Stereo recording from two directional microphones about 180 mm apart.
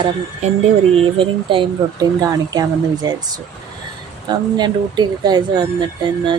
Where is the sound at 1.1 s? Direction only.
30° right (ahead or behind).